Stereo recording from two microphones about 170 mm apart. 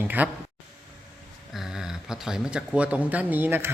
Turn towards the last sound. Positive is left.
turn(degrees=-10)  # may be behind; listen again after turning